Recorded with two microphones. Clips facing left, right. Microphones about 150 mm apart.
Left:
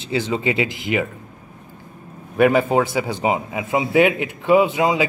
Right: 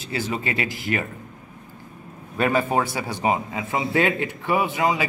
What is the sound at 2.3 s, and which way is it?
A man's voice, 15° left (ahead or behind).